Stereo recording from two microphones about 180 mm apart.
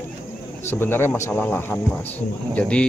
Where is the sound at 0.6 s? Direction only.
10° left (ahead or behind).